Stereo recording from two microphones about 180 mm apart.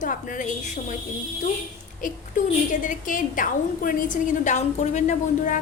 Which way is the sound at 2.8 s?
45° left (ahead or behind).